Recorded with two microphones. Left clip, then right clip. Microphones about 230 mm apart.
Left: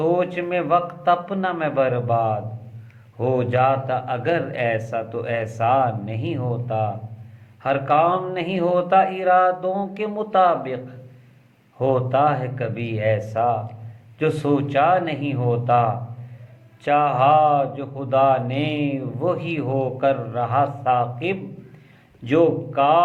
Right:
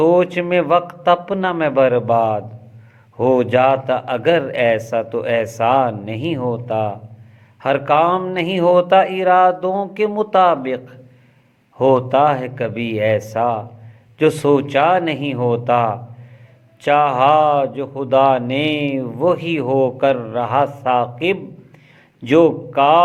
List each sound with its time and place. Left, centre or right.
0.0 s speech: right